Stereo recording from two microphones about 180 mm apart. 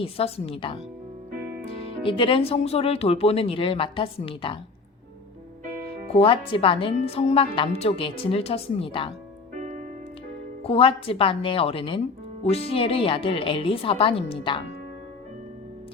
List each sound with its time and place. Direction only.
0.0 s speech: 30° left (ahead or behind)
5.9 s speech: 30° left (ahead or behind)
10.6 s speech: 30° left (ahead or behind)